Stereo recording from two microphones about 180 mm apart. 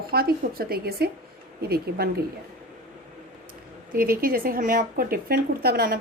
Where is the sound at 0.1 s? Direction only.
55° right (ahead or behind).